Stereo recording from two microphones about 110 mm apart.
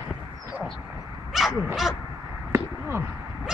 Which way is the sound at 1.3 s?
Centre (ahead or behind).